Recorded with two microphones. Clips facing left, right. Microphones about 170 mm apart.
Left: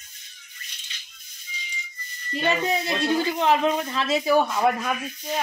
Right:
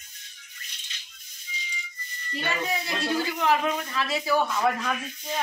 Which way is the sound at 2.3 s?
20° left (ahead or behind).